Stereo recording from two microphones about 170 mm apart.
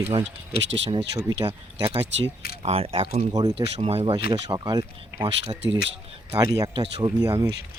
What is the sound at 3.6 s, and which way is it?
A man's voice, 35° right (ahead or behind).